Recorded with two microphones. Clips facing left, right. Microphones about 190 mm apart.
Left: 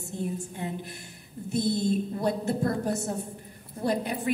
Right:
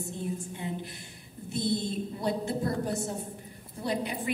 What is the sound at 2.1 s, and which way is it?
A woman's voice, 50° left (ahead or behind).